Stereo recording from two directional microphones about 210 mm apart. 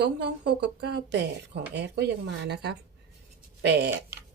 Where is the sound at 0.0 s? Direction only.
50° right (ahead or behind).